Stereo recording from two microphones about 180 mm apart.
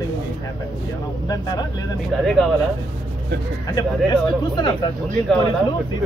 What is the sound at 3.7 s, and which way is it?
Speech, 25° left (ahead or behind).